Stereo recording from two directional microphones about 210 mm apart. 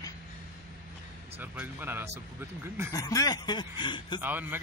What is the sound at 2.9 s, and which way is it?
Speech, 15° left (ahead or behind).